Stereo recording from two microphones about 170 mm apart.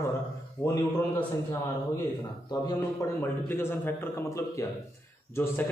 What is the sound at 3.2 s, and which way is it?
A man's voice, 15° left (ahead or behind).